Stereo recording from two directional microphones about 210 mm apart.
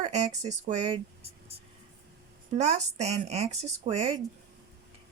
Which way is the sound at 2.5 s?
30° right (ahead or behind).